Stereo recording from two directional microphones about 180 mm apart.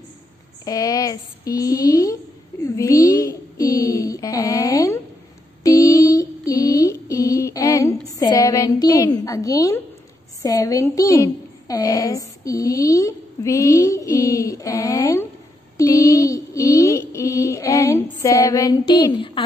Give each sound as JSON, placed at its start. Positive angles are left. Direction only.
{"t": 0.7, "sound": "a woman's voice", "side_deg": 20}
{"t": 2.6, "sound": "a sound", "side_deg": 15}
{"t": 5.6, "sound": "female singing", "side_deg": 20}
{"t": 10.4, "sound": "a woman's voice", "side_deg": 20}
{"t": 15.8, "sound": "child singing", "side_deg": 20}
{"t": 18.2, "sound": "a woman's voice", "side_deg": 20}